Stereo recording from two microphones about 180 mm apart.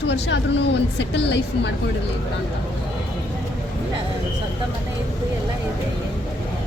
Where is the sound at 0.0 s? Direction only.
75° left (ahead or behind).